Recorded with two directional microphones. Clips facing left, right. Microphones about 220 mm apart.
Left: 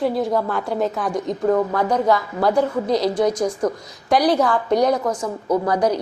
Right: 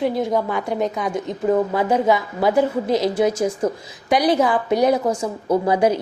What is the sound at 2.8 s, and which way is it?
Speech, 25° right (ahead or behind).